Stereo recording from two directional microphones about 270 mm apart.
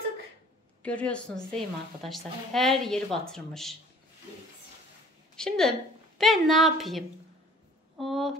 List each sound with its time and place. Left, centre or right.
0.8 s a woman's voice: centre
5.3 s a woman's voice: centre